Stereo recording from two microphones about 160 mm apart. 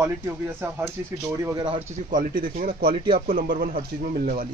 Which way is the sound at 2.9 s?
35° right (ahead or behind).